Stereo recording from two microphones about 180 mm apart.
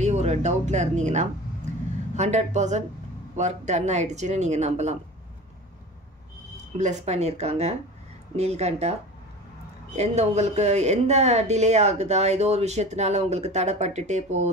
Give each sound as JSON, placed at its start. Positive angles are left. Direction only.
{"t": 0.0, "sound": "speech", "side_deg": -40}
{"t": 6.8, "sound": "speech", "side_deg": -40}
{"t": 9.9, "sound": "speech", "side_deg": -35}